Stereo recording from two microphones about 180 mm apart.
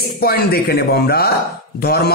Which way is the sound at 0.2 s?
60° left (ahead or behind).